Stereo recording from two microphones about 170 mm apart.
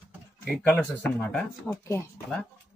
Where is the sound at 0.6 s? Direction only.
10° left (ahead or behind).